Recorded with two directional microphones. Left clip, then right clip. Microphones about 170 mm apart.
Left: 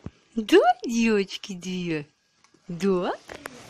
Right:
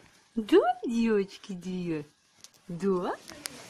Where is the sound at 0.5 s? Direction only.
10° left (ahead or behind).